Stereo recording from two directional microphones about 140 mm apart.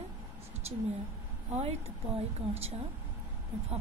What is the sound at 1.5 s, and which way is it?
A woman's voice, 45° right (ahead or behind).